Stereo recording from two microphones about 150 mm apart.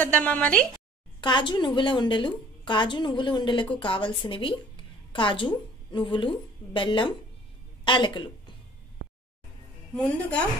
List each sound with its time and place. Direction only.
0.0 s a woman's voice: 10° left (ahead or behind)
1.2 s a woman's voice: 30° left (ahead or behind)
9.9 s a woman's voice: 5° left (ahead or behind)